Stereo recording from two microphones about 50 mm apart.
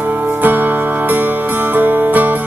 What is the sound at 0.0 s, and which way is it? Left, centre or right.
Music, right.